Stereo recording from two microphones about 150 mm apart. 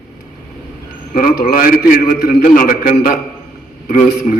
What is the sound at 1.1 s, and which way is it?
A man's voice, 75° left (ahead or behind).